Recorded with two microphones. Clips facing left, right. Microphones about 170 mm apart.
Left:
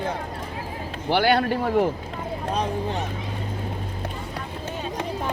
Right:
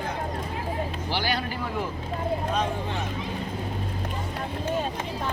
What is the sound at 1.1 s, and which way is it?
Speech, 60° left (ahead or behind).